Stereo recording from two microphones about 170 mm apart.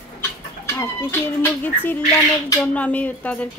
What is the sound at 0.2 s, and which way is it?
Chicken, 15° left (ahead or behind).